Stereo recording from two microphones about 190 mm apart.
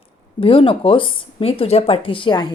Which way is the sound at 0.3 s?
30° left (ahead or behind).